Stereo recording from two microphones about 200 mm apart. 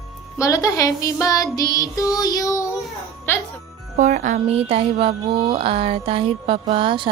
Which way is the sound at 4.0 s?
40° right (ahead or behind).